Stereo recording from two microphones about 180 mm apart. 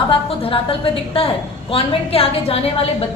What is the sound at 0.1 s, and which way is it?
A woman's voice, 30° left (ahead or behind).